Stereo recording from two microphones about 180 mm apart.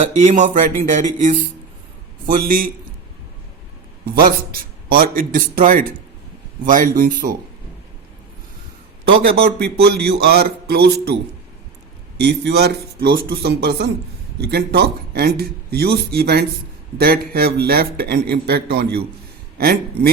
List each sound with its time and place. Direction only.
0.0 s a man's voice: 40° right (ahead or behind)
4.0 s a man's voice: 55° right (ahead or behind)
9.6 s a man's voice: 60° right (ahead or behind)